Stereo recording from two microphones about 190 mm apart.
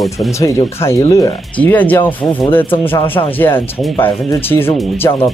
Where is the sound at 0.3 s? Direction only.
15° left (ahead or behind).